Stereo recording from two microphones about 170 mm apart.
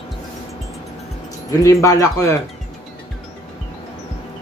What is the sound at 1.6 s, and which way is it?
Speech, 20° left (ahead or behind).